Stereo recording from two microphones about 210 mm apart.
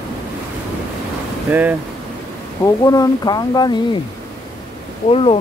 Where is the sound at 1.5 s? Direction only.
10° right (ahead or behind).